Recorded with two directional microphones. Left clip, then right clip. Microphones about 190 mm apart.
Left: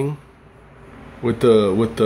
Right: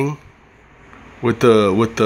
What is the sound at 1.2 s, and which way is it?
Speech, 15° right (ahead or behind).